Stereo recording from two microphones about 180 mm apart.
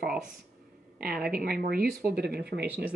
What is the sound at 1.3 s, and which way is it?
Speech, 60° right (ahead or behind).